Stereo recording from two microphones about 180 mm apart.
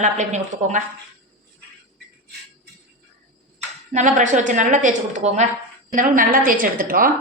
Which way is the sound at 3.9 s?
45° right (ahead or behind).